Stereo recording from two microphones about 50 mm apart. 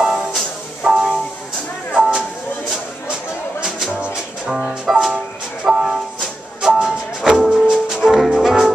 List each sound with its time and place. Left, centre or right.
0.0 s music: centre
2.0 s a sound: centre
4.5 s music: centre
5.1 s music: centre